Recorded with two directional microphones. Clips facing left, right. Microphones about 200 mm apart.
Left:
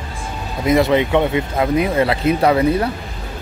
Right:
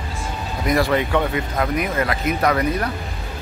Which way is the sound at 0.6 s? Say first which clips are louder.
Left 5 dB; 20° left (ahead or behind).